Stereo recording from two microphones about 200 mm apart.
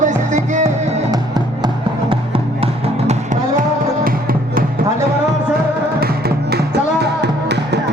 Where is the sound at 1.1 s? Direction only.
20° right (ahead or behind); by 4.6 s 45° right (ahead or behind).